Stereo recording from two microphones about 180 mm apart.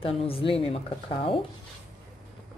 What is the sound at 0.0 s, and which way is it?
Speech, 30° left (ahead or behind).